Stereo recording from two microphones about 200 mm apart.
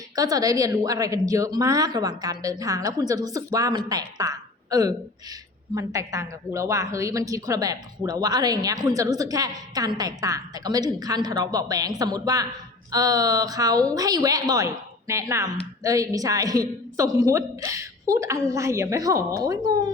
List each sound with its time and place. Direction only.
0.2 s a woman's voice: 20° right (ahead or behind)